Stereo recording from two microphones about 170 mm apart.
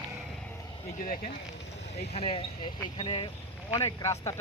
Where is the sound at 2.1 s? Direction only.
35° left (ahead or behind).